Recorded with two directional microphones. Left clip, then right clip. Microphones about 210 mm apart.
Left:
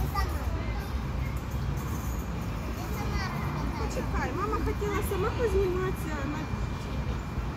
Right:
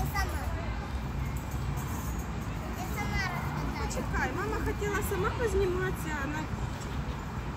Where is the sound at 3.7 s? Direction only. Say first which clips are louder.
Right 1 dB; centre (ahead or behind).